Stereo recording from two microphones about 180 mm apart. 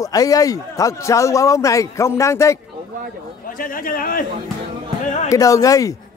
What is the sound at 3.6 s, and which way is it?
Speech, 50° left (ahead or behind).